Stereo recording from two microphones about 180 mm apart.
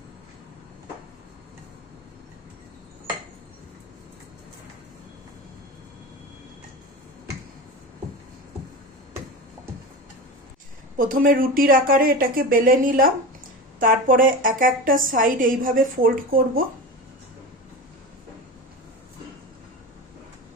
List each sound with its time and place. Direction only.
10.9 s a woman's voice: 50° right (ahead or behind)